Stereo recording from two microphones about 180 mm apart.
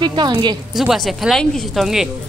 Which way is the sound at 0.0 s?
25° right (ahead or behind).